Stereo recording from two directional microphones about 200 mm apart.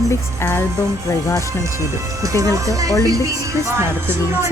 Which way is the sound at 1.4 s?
15° right (ahead or behind).